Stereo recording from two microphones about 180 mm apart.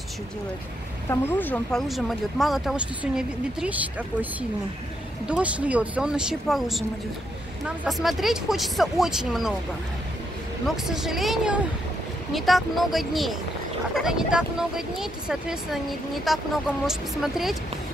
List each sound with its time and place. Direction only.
1.1 s speech: 10° left (ahead or behind)
10.9 s speech: centre (ahead or behind)